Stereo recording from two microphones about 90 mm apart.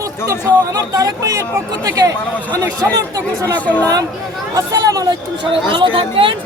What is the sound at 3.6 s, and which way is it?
Speech, 15° left (ahead or behind).